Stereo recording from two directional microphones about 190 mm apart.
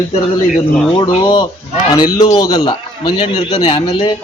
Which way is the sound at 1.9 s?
20° left (ahead or behind).